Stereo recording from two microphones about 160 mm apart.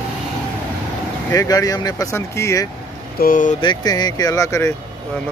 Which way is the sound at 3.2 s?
55° left (ahead or behind).